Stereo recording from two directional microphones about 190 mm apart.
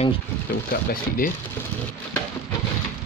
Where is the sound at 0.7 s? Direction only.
50° left (ahead or behind).